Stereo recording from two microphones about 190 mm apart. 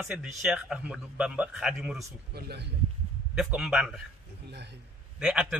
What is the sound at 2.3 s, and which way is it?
Speech, 60° right (ahead or behind).